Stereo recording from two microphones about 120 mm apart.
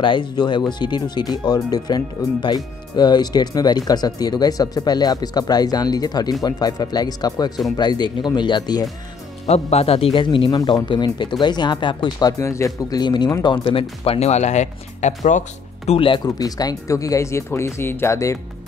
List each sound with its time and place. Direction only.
0.0 s speech: 40° left (ahead or behind)
9.5 s speech: 60° left (ahead or behind); by 13.0 s 25° left (ahead or behind)
13.0 s speech: 40° left (ahead or behind); by 15.4 s 85° left
15.9 s speech: 45° left (ahead or behind)
16.3 s speech: 30° left (ahead or behind)